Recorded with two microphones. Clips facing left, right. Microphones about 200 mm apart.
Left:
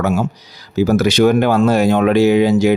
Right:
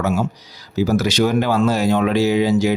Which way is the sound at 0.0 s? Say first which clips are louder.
Left 3 dB; 50° left (ahead or behind).